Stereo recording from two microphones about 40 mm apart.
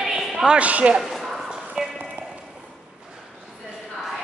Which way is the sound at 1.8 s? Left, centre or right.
Right.